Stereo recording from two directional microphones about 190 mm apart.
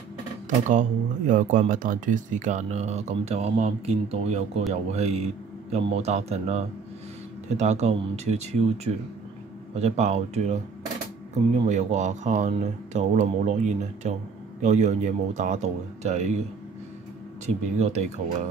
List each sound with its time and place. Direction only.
0.7 s speech: 40° right (ahead or behind)
11.6 s speech: 40° right (ahead or behind)
17.6 s speech: 35° right (ahead or behind)